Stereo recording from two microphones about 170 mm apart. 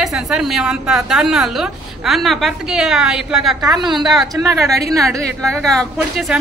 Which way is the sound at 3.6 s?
20° right (ahead or behind).